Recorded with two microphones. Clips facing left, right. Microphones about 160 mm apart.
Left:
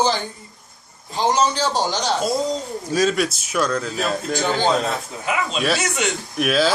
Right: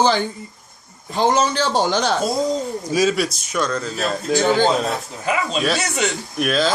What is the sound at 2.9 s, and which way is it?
A man's voice, 5° right (ahead or behind).